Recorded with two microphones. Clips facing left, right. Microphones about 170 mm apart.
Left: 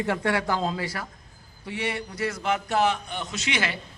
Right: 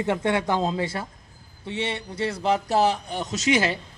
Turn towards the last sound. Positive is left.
turn(degrees=-40)  # may be behind; listen again after turning